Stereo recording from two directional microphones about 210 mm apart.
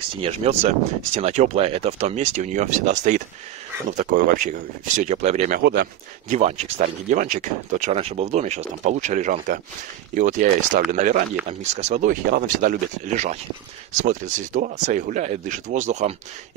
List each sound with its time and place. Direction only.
0.2 s speech: 30° right (ahead or behind)
5.6 s speech: 45° right (ahead or behind)
6.3 s speech: 35° right (ahead or behind)